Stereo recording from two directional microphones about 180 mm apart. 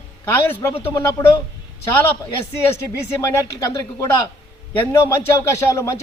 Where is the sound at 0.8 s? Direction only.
15° left (ahead or behind).